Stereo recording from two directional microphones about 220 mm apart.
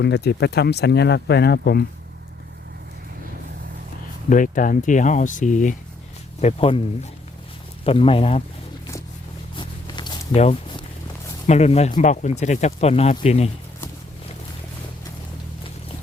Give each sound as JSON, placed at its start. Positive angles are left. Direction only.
{"t": 0.0, "sound": "speech", "side_deg": 50}
{"t": 4.3, "sound": "speech", "side_deg": 35}
{"t": 9.6, "sound": "zipper", "side_deg": 20}
{"t": 11.4, "sound": "speech", "side_deg": 30}